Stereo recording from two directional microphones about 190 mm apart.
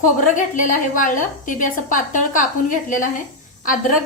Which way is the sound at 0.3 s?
45° left (ahead or behind).